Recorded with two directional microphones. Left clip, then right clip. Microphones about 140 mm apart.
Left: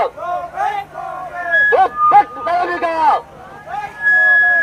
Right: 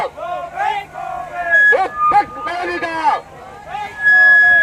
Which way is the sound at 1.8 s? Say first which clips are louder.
Left 3 dB; 30° left (ahead or behind).